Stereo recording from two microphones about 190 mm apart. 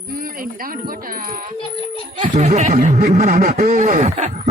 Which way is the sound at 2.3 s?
40° right (ahead or behind).